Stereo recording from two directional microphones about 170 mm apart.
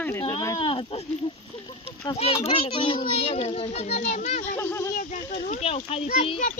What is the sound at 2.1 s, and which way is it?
Speech, 35° left (ahead or behind).